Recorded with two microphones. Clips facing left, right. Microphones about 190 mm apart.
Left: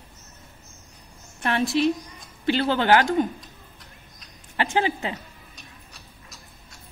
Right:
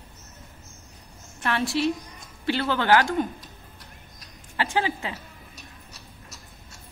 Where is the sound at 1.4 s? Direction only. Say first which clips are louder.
Left 3 dB; 20° left (ahead or behind).